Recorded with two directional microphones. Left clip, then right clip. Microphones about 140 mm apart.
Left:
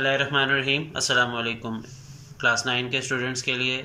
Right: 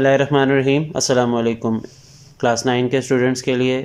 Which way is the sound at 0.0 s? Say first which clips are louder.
Right 7 dB; 45° right (ahead or behind).